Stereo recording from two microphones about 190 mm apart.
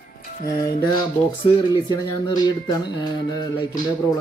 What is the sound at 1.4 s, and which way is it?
Speech, 20° left (ahead or behind).